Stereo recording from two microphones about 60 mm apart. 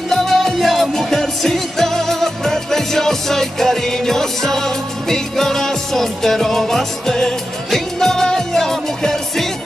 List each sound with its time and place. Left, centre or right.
0.1 s music: centre